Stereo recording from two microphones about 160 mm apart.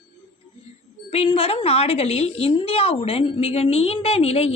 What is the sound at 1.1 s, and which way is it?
A woman's voice, 35° left (ahead or behind).